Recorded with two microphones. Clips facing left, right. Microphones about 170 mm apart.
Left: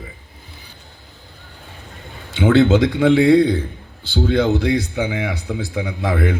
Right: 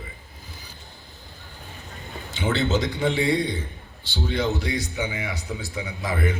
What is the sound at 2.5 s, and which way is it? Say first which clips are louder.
Speech: left 10 dB; 55° left (ahead or behind).